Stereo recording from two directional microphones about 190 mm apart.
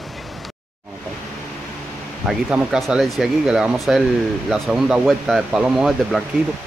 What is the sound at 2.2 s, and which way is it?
Speech, 5° right (ahead or behind).